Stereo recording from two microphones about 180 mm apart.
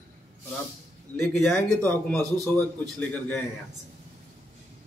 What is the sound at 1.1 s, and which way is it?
A man's voice, 5° left (ahead or behind).